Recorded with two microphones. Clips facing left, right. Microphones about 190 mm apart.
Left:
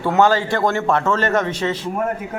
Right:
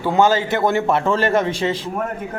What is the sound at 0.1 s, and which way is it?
A man's voice, 20° right (ahead or behind).